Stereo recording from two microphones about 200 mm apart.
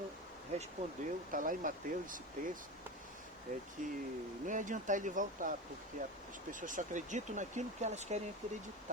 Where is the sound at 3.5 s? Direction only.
35° right (ahead or behind).